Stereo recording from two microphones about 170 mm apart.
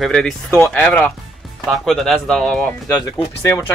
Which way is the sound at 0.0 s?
5° left (ahead or behind).